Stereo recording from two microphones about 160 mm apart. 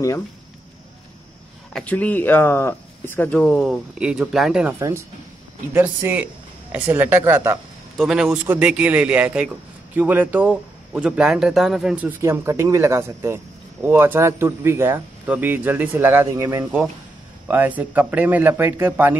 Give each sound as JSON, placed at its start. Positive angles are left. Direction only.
{"t": 1.7, "sound": "speech", "side_deg": 5}
{"t": 4.7, "sound": "speech", "side_deg": -15}